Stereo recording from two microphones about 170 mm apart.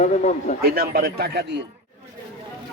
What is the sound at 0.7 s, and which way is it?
Speech, 60° right (ahead or behind).